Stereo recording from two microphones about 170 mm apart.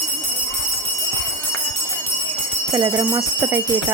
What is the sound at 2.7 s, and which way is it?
Speech, 20° right (ahead or behind).